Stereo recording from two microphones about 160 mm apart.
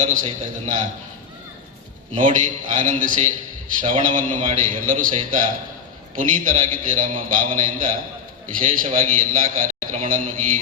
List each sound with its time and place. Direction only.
0.0 s a man's voice: 55° right (ahead or behind)
2.1 s a man's voice: 55° right (ahead or behind)